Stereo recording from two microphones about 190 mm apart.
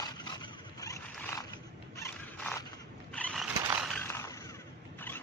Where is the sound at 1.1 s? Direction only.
10° left (ahead or behind).